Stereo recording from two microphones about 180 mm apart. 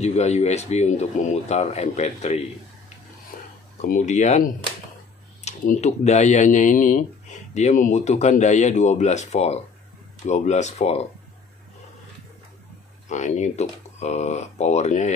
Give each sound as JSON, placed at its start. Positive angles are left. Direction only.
{"t": 0.0, "sound": "speech", "side_deg": 35}
{"t": 3.3, "sound": "a sound", "side_deg": 50}
{"t": 3.8, "sound": "speech", "side_deg": 40}
{"t": 13.1, "sound": "speech", "side_deg": 40}